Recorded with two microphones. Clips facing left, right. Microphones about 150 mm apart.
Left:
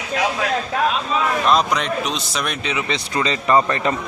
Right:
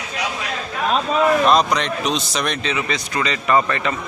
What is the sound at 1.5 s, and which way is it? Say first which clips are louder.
A man's voice: right 1 dB; 5° left (ahead or behind).